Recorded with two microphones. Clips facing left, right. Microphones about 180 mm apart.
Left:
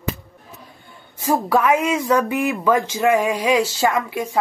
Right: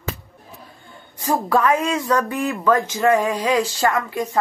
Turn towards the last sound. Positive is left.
turn(degrees=10)  # may be behind; listen again after turning